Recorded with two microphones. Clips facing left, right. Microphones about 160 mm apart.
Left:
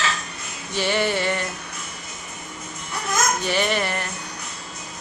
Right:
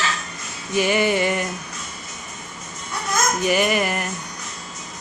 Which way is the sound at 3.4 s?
5° right (ahead or behind).